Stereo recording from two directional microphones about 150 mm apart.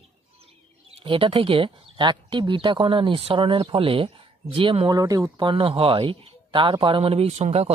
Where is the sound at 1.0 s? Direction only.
35° right (ahead or behind).